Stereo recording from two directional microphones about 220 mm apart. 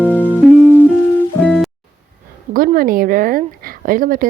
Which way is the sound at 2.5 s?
40° right (ahead or behind).